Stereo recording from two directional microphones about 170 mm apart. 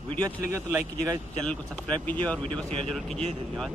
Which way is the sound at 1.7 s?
5° left (ahead or behind).